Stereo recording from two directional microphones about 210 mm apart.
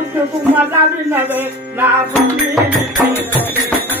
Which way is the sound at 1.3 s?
10° right (ahead or behind).